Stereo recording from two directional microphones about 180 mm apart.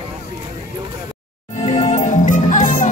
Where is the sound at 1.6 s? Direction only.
30° left (ahead or behind).